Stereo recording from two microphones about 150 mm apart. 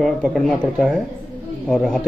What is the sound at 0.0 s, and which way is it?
Speech, centre (ahead or behind).